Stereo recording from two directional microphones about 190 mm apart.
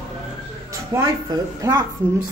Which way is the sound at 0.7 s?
15° right (ahead or behind).